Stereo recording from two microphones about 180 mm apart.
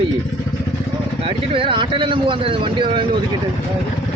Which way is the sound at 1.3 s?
30° right (ahead or behind).